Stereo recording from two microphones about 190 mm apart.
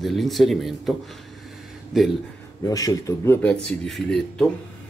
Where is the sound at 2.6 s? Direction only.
20° left (ahead or behind).